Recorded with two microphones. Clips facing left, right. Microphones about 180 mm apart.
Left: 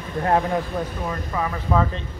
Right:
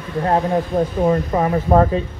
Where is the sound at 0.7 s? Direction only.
45° right (ahead or behind).